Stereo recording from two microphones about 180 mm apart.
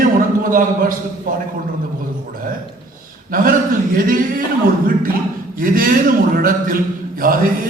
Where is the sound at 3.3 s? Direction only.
50° right (ahead or behind).